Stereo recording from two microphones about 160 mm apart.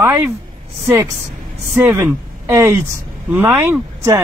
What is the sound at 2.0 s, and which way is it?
Speech, 15° right (ahead or behind).